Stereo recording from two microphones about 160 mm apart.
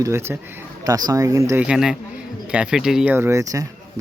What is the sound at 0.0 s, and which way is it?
Speech, 15° right (ahead or behind).